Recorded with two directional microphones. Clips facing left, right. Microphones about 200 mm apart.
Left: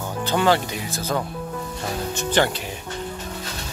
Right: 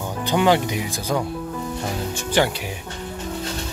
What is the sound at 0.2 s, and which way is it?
Speech, 15° right (ahead or behind).